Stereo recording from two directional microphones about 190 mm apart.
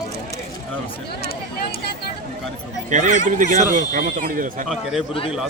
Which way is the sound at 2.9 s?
40° right (ahead or behind).